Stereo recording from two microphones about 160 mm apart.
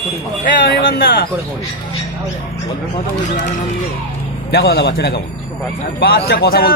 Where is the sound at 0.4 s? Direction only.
70° left (ahead or behind).